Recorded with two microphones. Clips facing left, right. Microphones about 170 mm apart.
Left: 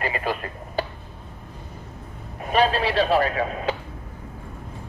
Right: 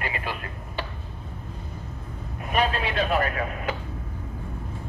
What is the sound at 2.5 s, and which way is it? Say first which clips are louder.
A man's voice: left 5 dB; 35° left (ahead or behind).